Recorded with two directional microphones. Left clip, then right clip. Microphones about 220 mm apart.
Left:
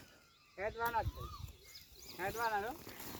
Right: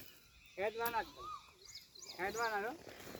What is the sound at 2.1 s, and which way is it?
Speech, centre (ahead or behind).